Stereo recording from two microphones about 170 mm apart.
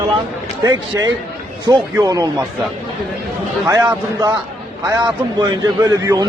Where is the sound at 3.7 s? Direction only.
20° right (ahead or behind).